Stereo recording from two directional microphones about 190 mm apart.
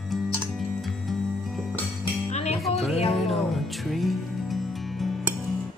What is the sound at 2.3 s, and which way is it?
Music, 35° left (ahead or behind).